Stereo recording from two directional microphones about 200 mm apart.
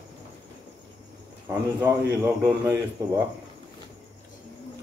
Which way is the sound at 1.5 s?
15° right (ahead or behind).